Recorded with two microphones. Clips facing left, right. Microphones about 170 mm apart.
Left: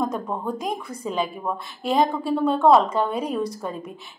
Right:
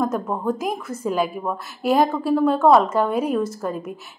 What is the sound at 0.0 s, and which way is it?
A woman's voice, 5° right (ahead or behind).